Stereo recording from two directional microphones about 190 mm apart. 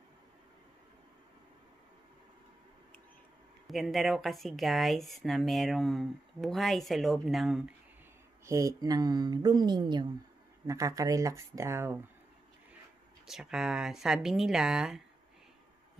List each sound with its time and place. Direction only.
3.6 s speech: centre (ahead or behind)
8.5 s speech: 15° right (ahead or behind)
13.3 s speech: centre (ahead or behind)